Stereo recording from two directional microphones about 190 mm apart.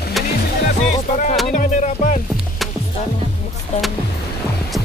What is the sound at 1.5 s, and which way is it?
Speech, 40° left (ahead or behind).